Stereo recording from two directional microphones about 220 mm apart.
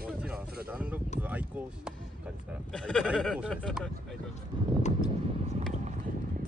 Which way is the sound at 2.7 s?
5° left (ahead or behind).